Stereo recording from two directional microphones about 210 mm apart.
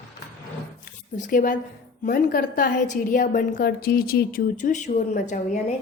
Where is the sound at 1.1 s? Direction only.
40° left (ahead or behind).